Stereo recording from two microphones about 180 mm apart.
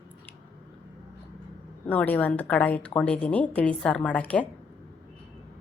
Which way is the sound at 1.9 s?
10° left (ahead or behind).